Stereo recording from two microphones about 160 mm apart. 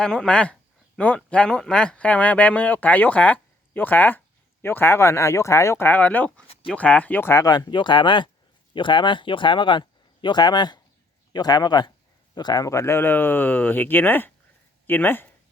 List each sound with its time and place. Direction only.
0.0 s speech: 5° left (ahead or behind)